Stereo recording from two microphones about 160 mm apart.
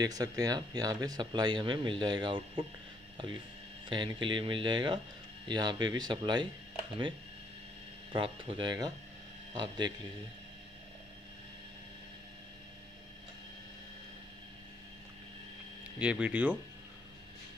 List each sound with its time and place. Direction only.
0.0 s speech: 25° right (ahead or behind)
3.9 s speech: 30° right (ahead or behind)
8.1 s speech: 30° right (ahead or behind)
16.0 s speech: 10° right (ahead or behind)